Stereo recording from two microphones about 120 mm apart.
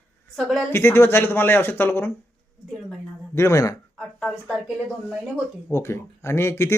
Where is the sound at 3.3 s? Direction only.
20° left (ahead or behind).